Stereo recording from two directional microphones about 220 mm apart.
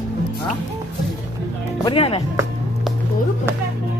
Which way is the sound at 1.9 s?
25° left (ahead or behind).